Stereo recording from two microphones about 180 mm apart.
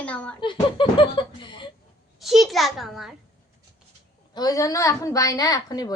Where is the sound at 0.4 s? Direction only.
25° left (ahead or behind).